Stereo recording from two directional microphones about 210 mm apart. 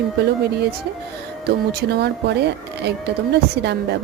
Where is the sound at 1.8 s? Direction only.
50° right (ahead or behind).